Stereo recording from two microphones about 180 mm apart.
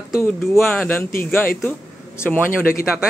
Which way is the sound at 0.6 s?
Centre (ahead or behind).